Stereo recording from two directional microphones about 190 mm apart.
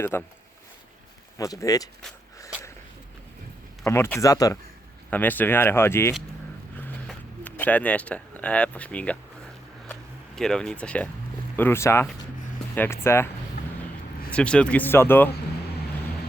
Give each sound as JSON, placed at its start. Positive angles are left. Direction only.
{"t": 0.0, "sound": "speech", "side_deg": 10}
{"t": 1.4, "sound": "speech", "side_deg": 15}
{"t": 3.8, "sound": "speech", "side_deg": 15}
{"t": 6.7, "sound": "zipper", "side_deg": 10}
{"t": 9.9, "sound": "speech", "side_deg": 0}